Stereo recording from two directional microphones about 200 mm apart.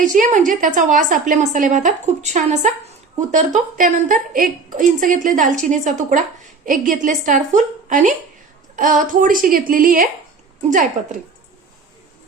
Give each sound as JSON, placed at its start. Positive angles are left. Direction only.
{"t": 0.0, "sound": "a woman's voice", "side_deg": -40}